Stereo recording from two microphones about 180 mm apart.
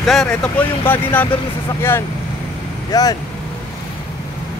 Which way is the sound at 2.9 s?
20° left (ahead or behind).